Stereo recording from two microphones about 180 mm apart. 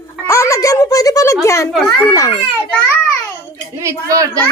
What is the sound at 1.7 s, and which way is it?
Speech, centre (ahead or behind).